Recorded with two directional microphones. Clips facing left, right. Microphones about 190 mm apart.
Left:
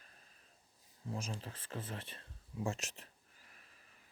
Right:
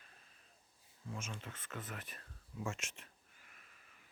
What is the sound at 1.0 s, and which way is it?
Speech, 35° left (ahead or behind).